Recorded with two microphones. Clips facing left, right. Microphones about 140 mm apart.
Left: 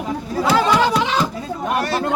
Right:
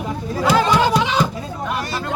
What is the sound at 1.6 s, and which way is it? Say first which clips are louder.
Speech: left 5 dB; 55° left (ahead or behind).